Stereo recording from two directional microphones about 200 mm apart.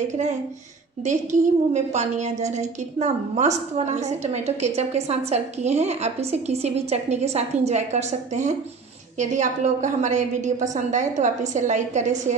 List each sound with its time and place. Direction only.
1.0 s a woman's voice: 35° right (ahead or behind)